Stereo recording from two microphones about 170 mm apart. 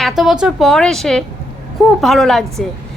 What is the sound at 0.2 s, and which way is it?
A woman's voice, 5° right (ahead or behind).